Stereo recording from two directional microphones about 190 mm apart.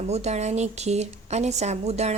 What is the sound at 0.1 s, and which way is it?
A woman's voice, 35° right (ahead or behind).